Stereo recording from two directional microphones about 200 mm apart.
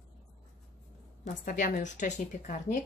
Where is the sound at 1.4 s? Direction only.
40° left (ahead or behind).